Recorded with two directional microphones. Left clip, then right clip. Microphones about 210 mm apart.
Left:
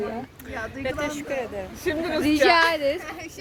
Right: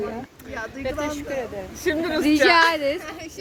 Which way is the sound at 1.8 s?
45° right (ahead or behind).